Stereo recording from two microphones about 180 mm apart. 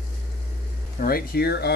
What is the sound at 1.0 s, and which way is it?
Speech, 55° left (ahead or behind).